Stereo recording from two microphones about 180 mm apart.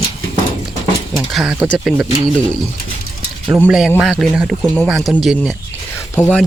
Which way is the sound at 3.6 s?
5° right (ahead or behind).